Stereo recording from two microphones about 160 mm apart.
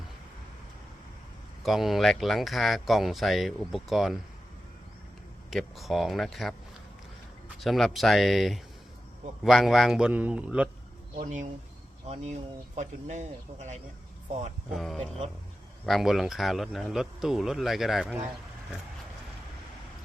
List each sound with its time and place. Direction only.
1.6 s speech: centre (ahead or behind)
5.5 s speech: centre (ahead or behind)
7.6 s speech: centre (ahead or behind)
11.2 s speech: 50° right (ahead or behind)
14.8 s speech: centre (ahead or behind)